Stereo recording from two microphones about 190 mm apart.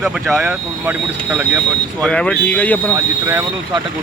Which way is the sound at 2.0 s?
5° left (ahead or behind).